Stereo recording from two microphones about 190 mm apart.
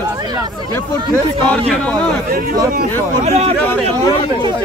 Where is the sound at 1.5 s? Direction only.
5° left (ahead or behind).